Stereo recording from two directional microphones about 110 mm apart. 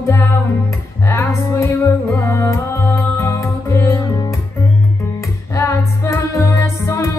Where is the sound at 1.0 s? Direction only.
25° left (ahead or behind).